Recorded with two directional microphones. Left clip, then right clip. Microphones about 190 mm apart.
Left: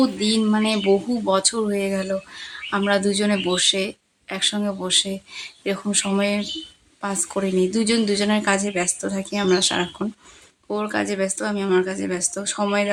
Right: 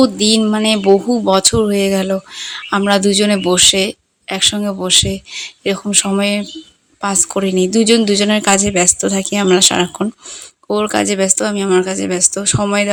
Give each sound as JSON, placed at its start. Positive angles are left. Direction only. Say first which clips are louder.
{"t": 0.0, "sound": "speech", "louder": "right 8 dB", "side_deg": -30}